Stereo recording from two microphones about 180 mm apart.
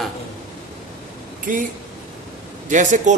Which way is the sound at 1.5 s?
50° right (ahead or behind).